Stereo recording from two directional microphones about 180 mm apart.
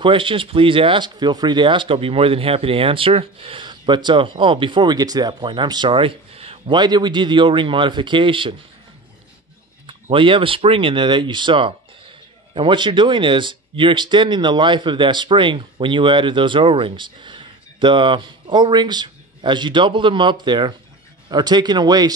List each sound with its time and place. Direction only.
0.0 s speech: 30° right (ahead or behind)
9.8 s speech: 30° right (ahead or behind)